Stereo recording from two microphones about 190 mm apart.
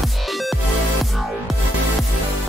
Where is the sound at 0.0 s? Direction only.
Centre (ahead or behind).